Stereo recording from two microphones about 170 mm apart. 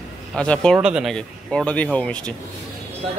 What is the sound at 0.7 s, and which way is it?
Speech, 5° right (ahead or behind).